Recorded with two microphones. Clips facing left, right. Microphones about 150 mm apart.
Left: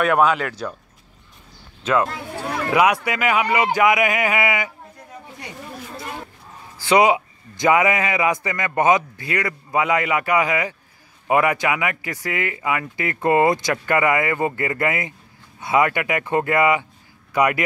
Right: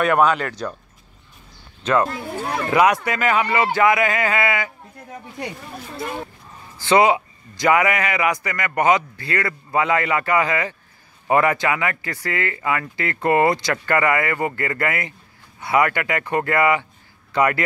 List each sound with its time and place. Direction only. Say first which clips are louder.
0.0 s speech: even; 5° left (ahead or behind)
1.8 s a man's voice: right 1 dB; 5° left (ahead or behind)
6.8 s a man's voice: even; 15° left (ahead or behind)